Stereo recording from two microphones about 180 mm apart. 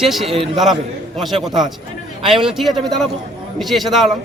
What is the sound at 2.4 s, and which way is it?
A man's voice, centre (ahead or behind).